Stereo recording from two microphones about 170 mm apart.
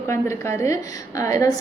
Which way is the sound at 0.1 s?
15° left (ahead or behind).